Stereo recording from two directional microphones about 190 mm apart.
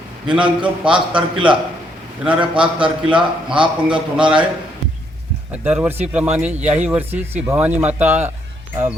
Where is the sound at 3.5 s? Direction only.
25° right (ahead or behind).